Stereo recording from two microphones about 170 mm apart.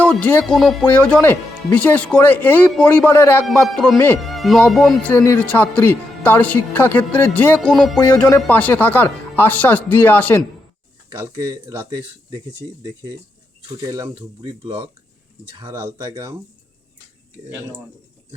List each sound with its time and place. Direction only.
0.0 s speech: 10° left (ahead or behind)
4.2 s speech: centre (ahead or behind)
5.1 s speech: 15° left (ahead or behind)
11.2 s speech: 20° right (ahead or behind)
13.7 s speech: 25° right (ahead or behind)
14.6 s speech: 35° right (ahead or behind)
15.6 s speech: 20° right (ahead or behind)